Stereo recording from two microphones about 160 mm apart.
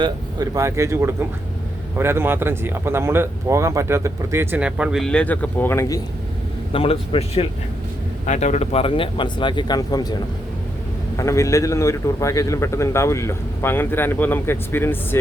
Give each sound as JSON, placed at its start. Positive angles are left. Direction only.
{"t": 0.0, "sound": "speech", "side_deg": -20}
{"t": 6.7, "sound": "speech", "side_deg": 35}
{"t": 11.2, "sound": "speech", "side_deg": 20}